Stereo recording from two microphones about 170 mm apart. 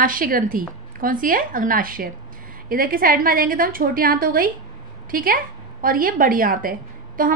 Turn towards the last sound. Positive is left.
turn(degrees=-55)  # may be behind; listen again after turning